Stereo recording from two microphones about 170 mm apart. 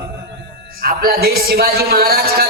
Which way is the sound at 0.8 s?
60° right (ahead or behind).